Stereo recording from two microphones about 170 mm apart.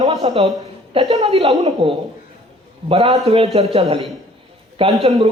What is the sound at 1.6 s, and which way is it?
Speech, 40° right (ahead or behind).